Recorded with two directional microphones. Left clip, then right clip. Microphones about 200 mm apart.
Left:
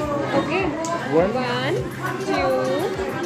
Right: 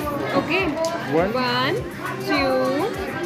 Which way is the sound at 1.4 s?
50° right (ahead or behind).